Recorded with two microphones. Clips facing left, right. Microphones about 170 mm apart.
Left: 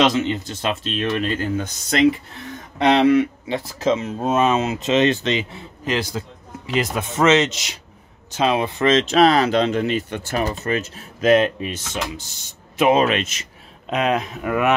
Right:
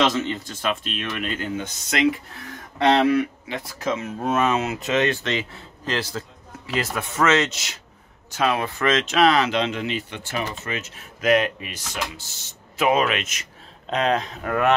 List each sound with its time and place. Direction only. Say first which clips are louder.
0.0 s speech: left 3 dB; 15° left (ahead or behind); by 2.0 s 35° left (ahead or behind)
2.8 s speech: left 3 dB; 20° left (ahead or behind)
13.8 s speech: left 2 dB; 5° left (ahead or behind)